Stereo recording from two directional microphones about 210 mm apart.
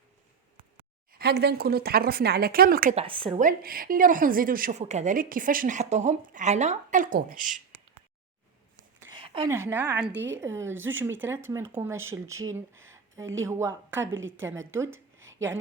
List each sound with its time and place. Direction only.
1.2 s speech: 50° right (ahead or behind)
2.9 s speech: 25° right (ahead or behind)
3.4 s a woman's voice: 45° right (ahead or behind)
9.0 s a sound: 20° right (ahead or behind)
9.5 s speech: 10° right (ahead or behind)